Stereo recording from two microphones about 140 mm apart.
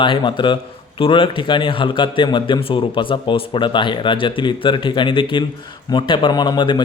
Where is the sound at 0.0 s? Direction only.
35° left (ahead or behind).